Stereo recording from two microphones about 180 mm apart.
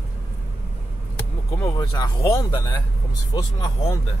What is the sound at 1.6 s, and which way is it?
Speech, 20° left (ahead or behind).